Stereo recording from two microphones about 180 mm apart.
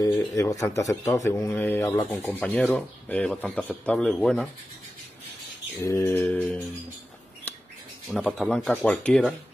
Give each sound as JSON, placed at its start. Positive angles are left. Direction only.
{"t": 0.0, "sound": "speech", "side_deg": 20}
{"t": 5.8, "sound": "speech", "side_deg": 15}
{"t": 8.1, "sound": "speech", "side_deg": 5}